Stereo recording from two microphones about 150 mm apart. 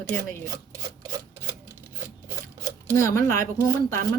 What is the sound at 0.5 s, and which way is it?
Speech, 20° right (ahead or behind).